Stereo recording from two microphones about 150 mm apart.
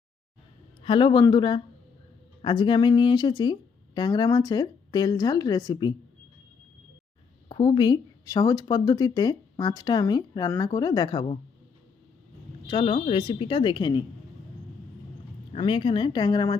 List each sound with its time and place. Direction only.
0.9 s a woman's voice: 30° left (ahead or behind)
7.4 s speech: 30° left (ahead or behind)
12.6 s a woman's voice: 30° left (ahead or behind)
15.5 s a woman's voice: 30° left (ahead or behind)